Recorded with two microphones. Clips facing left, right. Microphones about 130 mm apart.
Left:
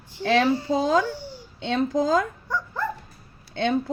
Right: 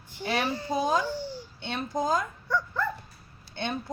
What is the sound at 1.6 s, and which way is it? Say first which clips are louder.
Speech: left 7 dB; 90° left.